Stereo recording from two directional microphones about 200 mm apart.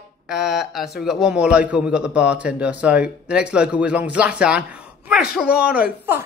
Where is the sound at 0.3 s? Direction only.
5° right (ahead or behind).